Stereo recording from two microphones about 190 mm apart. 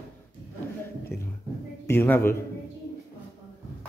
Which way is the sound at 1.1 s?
5° right (ahead or behind).